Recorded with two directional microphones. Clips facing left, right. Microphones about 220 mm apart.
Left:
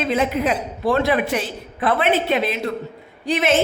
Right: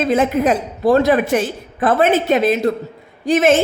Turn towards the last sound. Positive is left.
turn(degrees=-45)  # may be behind; listen again after turning